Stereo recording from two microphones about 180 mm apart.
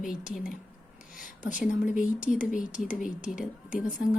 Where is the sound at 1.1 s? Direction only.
45° left (ahead or behind).